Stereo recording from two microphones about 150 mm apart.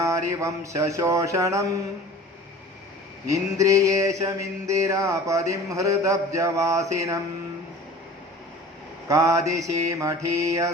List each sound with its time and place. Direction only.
0.0 s mantra: 20° right (ahead or behind)
3.2 s mantra: 20° right (ahead or behind)
9.0 s mantra: 20° right (ahead or behind)